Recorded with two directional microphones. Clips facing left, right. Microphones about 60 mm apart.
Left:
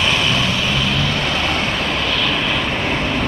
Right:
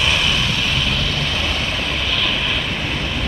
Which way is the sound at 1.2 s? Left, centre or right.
Left.